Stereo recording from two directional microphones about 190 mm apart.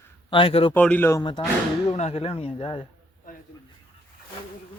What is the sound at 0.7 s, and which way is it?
Speech, 10° left (ahead or behind).